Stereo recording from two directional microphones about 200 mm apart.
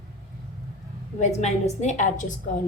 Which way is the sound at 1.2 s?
35° left (ahead or behind).